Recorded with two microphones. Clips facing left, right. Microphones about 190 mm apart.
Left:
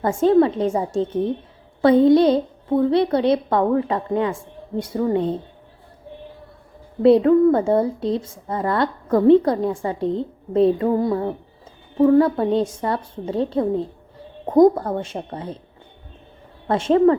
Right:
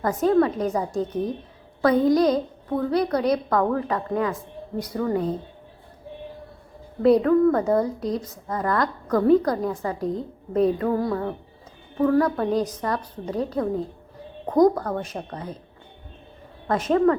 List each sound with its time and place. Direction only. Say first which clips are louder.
0.0 s a woman's voice: left 4 dB; 25° left (ahead or behind)
7.0 s a woman's voice: left 4 dB; 25° left (ahead or behind)
16.6 s a woman's voice: left 4 dB; 30° left (ahead or behind)